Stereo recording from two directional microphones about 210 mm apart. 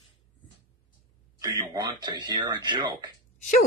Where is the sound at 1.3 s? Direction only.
15° right (ahead or behind).